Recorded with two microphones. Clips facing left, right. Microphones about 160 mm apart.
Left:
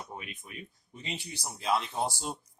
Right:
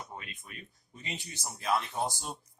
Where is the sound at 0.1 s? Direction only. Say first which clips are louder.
Left 2 dB; 20° left (ahead or behind).